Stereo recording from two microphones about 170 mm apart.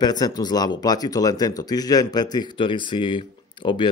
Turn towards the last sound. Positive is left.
turn(degrees=25)  # may be behind; listen again after turning